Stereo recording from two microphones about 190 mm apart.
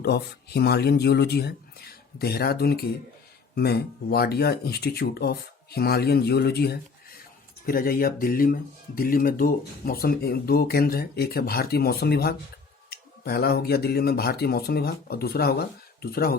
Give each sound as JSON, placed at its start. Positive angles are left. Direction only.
{"t": 0.0, "sound": "speech", "side_deg": 60}